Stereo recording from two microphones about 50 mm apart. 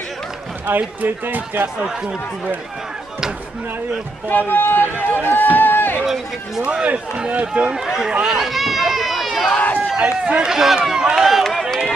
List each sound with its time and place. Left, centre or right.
0.7 s a man's voice: right
4.3 s speech: left
6.0 s speech: centre
6.6 s speech: right
7.7 s speech: centre
8.3 s run: centre
9.9 s speech: right
11.1 s run: centre